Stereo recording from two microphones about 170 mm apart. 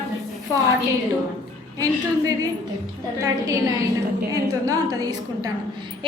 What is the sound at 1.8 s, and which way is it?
Speech, 20° right (ahead or behind).